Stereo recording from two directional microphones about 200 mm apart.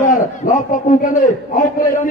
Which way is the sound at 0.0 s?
40° left (ahead or behind).